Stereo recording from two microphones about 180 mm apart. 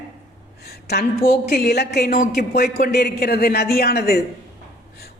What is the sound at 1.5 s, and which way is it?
Speech, 65° left (ahead or behind).